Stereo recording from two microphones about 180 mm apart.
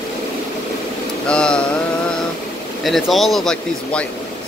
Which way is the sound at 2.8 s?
Centre (ahead or behind).